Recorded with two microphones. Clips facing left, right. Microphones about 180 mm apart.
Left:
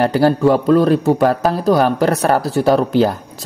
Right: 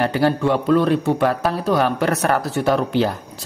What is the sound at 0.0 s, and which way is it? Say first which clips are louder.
A man's voice: left 5 dB; 40° left (ahead or behind).